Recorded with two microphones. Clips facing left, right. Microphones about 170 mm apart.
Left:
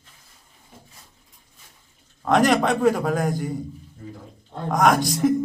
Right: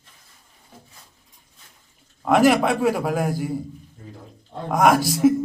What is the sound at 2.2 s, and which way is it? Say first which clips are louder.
A man's voice: right 2 dB; 5° right (ahead or behind).